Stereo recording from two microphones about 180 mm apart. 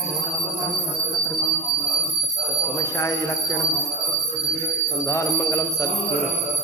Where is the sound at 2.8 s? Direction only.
20° left (ahead or behind).